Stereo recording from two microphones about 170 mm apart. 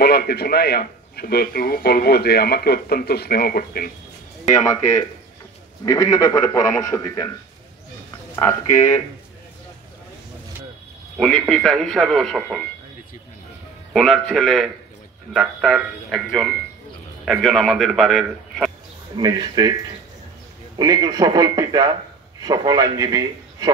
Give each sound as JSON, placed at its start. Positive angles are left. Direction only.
{"t": 0.0, "sound": "a man's voice", "side_deg": 65}
{"t": 5.9, "sound": "a man's voice", "side_deg": 20}
{"t": 8.4, "sound": "a man's voice", "side_deg": 15}
{"t": 11.1, "sound": "a man's voice", "side_deg": 0}
{"t": 13.9, "sound": "a man's voice", "side_deg": 0}
{"t": 19.1, "sound": "a man's voice", "side_deg": -25}
{"t": 20.7, "sound": "a man's voice", "side_deg": -25}